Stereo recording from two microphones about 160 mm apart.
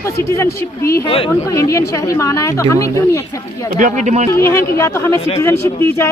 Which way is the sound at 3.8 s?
50° right (ahead or behind).